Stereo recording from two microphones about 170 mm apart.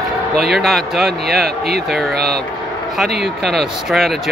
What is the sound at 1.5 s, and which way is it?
Speech, 65° right (ahead or behind).